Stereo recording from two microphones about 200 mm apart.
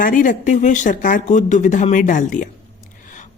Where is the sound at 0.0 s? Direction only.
40° left (ahead or behind).